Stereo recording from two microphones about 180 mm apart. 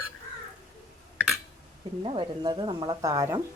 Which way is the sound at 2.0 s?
30° right (ahead or behind).